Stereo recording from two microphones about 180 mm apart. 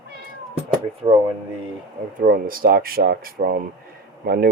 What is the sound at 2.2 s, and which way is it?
Speech, 50° right (ahead or behind).